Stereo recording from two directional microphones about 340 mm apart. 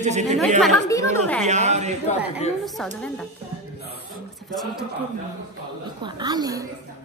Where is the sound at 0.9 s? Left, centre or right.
Centre.